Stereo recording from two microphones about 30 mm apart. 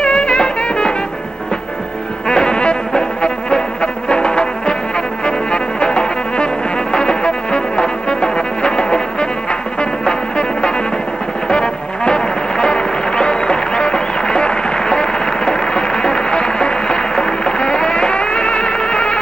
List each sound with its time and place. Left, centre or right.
0.0 s music: left
2.2 s music: left